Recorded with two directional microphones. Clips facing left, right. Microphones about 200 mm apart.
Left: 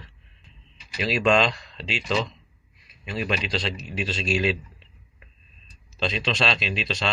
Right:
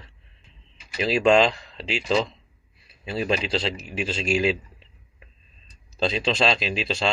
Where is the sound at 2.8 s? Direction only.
30° right (ahead or behind).